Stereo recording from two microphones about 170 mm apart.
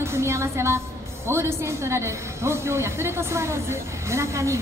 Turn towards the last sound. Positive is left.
turn(degrees=-15)  # may be behind; listen again after turning